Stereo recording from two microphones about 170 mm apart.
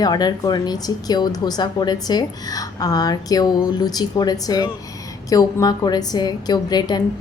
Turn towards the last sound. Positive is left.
turn(degrees=25)  # may be behind; listen again after turning